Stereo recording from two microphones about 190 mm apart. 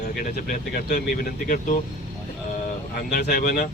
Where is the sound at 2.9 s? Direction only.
50° left (ahead or behind).